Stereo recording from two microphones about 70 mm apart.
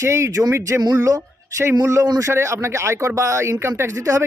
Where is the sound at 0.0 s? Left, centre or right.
Right.